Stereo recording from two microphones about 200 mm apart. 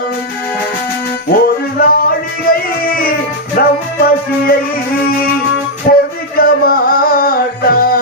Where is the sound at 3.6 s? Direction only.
50° left (ahead or behind).